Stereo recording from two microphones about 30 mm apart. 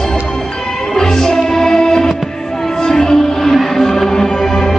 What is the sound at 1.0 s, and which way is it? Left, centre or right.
Music, centre.